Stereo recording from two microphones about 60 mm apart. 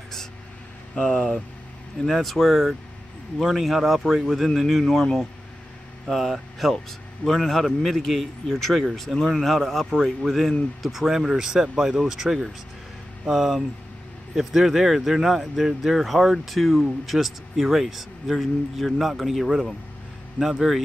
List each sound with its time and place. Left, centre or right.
0.9 s speech: centre
2.1 s speech: centre
6.0 s speech: centre
9.8 s a man's voice: centre
10.2 s speech: centre